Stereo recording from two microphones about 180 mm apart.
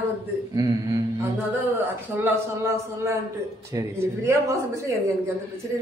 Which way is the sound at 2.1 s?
15° right (ahead or behind).